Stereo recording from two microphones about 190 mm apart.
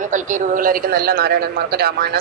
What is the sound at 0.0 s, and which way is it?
A woman's voice, 40° right (ahead or behind).